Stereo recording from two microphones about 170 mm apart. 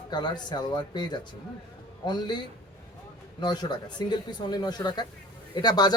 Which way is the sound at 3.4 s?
25° left (ahead or behind).